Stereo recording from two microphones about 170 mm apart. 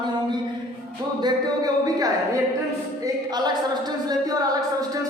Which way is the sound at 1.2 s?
20° right (ahead or behind).